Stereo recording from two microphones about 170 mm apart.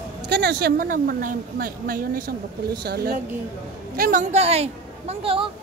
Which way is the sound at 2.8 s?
70° right (ahead or behind).